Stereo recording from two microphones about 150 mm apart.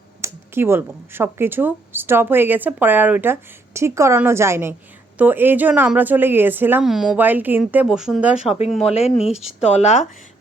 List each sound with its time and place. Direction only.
0.2 s speech: 15° right (ahead or behind)
6.8 s speech: centre (ahead or behind)
7.2 s speech: 10° right (ahead or behind)
8.4 s speech: 40° left (ahead or behind)